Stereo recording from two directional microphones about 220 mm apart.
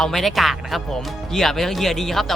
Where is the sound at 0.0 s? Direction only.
Centre (ahead or behind).